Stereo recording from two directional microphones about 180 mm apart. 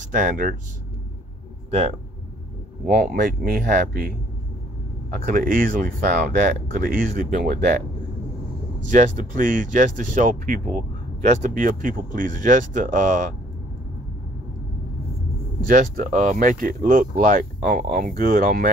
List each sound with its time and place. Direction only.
0.0 s speech: 45° right (ahead or behind)
3.0 s speech: 55° right (ahead or behind)
5.2 s speech: 50° right (ahead or behind)
8.9 s speech: 45° right (ahead or behind)
15.7 s speech: 45° right (ahead or behind)